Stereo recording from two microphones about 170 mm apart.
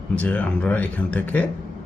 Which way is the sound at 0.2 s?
10° left (ahead or behind).